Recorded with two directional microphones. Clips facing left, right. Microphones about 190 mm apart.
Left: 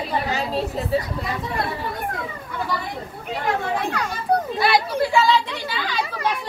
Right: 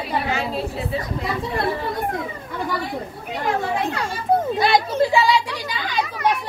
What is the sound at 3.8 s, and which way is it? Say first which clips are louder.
A woman's voice: right 1 dB; 25° right (ahead or behind).